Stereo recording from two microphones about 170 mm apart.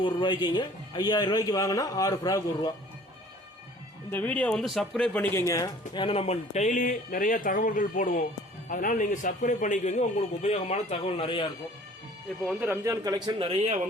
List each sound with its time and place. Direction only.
0.0 s a man's voice: 25° left (ahead or behind)
4.1 s a man's voice: 10° left (ahead or behind); by 11.4 s 30° left (ahead or behind)
12.5 s speech: 10° right (ahead or behind)
13.5 s speech: 40° right (ahead or behind)